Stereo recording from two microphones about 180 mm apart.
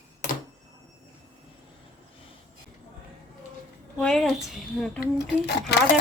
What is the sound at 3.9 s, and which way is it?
A woman's voice, 5° left (ahead or behind).